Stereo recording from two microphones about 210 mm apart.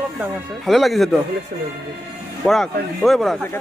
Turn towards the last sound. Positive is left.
turn(degrees=0)  # may be behind; listen again after turning